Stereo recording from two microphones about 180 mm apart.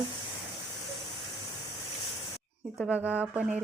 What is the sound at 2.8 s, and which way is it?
Speech, 10° right (ahead or behind).